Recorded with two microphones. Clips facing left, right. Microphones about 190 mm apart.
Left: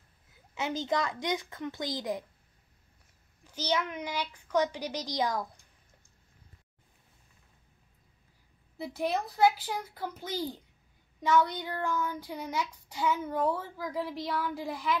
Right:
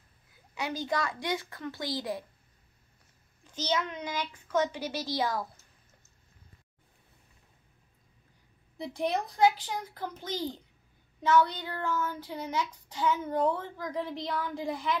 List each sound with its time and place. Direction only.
0.6 s a woman's voice: 20° left (ahead or behind)
3.4 s child singing: 10° left (ahead or behind)
8.7 s child singing: 5° left (ahead or behind)